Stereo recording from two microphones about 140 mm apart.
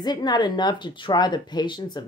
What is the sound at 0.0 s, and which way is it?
Speech, 30° left (ahead or behind).